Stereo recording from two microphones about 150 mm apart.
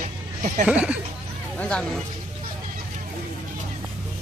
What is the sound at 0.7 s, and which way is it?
Speech, 10° right (ahead or behind).